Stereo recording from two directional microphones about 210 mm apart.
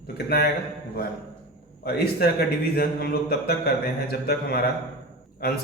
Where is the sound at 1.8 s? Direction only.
50° left (ahead or behind).